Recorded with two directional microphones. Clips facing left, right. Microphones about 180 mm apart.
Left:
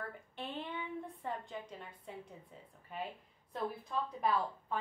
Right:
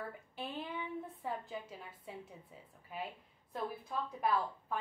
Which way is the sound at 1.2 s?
5° right (ahead or behind).